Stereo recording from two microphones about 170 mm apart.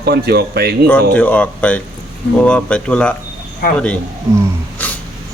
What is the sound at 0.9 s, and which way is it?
Speech, 10° left (ahead or behind).